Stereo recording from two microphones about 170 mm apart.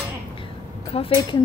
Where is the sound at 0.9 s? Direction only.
35° left (ahead or behind).